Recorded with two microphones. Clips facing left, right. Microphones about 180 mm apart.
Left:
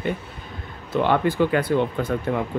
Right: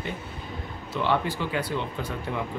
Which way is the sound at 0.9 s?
50° left (ahead or behind).